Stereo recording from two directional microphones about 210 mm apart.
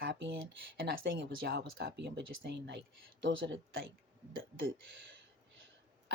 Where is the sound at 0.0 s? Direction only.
55° right (ahead or behind).